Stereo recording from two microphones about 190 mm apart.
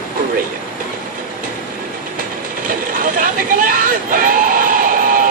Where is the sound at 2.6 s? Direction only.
45° right (ahead or behind).